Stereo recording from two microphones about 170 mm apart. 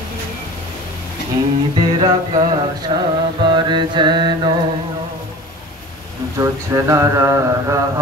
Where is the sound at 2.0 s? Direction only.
25° right (ahead or behind).